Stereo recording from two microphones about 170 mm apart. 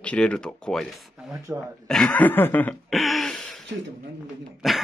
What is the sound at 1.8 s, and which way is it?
Cough, 5° left (ahead or behind).